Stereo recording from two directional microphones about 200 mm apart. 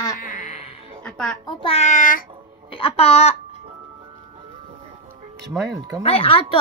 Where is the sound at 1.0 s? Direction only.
5° left (ahead or behind).